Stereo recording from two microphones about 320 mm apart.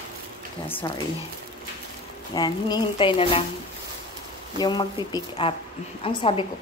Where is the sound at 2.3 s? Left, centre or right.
Centre.